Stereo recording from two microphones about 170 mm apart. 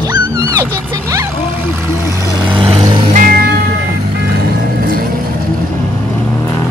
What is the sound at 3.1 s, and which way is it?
Music, 60° right (ahead or behind).